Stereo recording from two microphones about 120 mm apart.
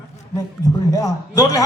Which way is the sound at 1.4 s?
30° left (ahead or behind).